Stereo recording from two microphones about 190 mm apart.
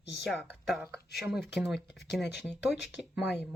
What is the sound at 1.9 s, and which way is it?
Speech, 60° left (ahead or behind).